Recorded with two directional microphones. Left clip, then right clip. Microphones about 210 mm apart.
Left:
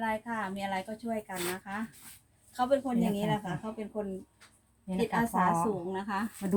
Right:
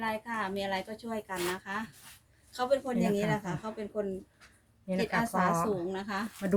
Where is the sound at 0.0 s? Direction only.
35° right (ahead or behind).